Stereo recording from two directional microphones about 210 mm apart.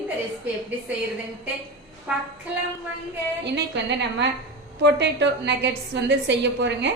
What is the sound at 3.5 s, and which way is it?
A woman's voice, 55° right (ahead or behind).